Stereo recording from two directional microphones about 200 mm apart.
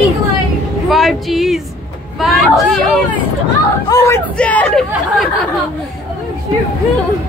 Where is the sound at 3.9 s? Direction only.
15° left (ahead or behind).